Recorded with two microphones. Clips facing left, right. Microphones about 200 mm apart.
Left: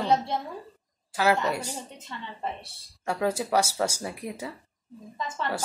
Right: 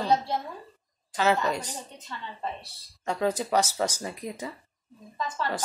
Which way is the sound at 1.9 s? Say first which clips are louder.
Even; 25° left (ahead or behind).